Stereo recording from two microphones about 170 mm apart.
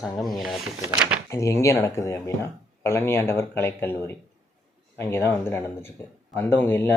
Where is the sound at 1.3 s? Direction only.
20° left (ahead or behind).